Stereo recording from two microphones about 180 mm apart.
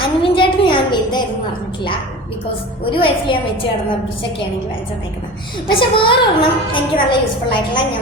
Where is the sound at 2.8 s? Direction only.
30° left (ahead or behind).